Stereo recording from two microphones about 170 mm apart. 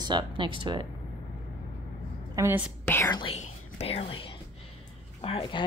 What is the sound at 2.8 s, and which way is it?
Speech, 15° left (ahead or behind).